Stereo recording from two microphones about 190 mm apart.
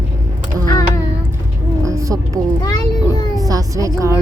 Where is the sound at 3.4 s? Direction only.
20° right (ahead or behind).